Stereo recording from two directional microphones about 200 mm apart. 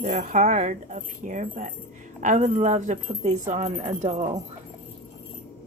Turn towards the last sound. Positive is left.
turn(degrees=-35)  # may be behind; listen again after turning